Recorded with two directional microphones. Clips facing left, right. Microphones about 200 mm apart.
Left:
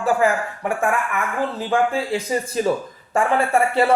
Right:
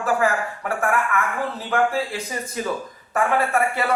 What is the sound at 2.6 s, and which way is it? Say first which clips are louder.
Speech: left 3 dB; 25° left (ahead or behind).